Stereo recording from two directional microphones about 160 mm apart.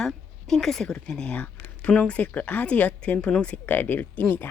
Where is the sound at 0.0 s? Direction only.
Centre (ahead or behind).